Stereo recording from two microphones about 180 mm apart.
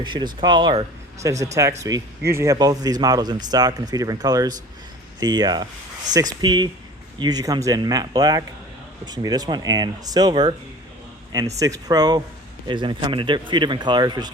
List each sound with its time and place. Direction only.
0.0 s speech: 25° right (ahead or behind)
11.6 s speech: 20° right (ahead or behind)